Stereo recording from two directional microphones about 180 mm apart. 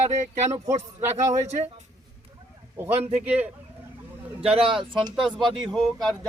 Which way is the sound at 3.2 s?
10° right (ahead or behind).